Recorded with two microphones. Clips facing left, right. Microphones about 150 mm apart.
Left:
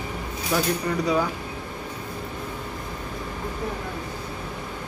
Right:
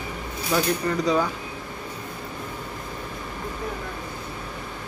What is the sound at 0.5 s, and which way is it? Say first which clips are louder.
Speech: right 1 dB; 5° left (ahead or behind).